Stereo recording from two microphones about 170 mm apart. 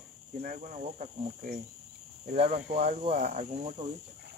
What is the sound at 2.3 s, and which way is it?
Speech, 35° right (ahead or behind).